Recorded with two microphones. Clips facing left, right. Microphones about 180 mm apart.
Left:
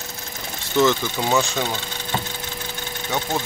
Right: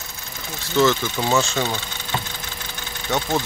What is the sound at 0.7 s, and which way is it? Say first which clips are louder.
Speech: even; 15° left (ahead or behind).